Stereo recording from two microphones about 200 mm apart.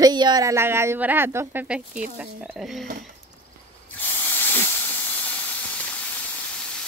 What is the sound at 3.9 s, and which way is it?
Spray, 10° left (ahead or behind).